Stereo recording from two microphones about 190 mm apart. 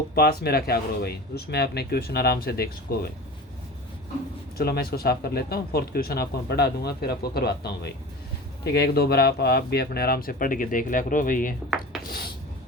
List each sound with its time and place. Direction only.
0.1 s speech: 55° left (ahead or behind)
4.5 s speech: 55° left (ahead or behind)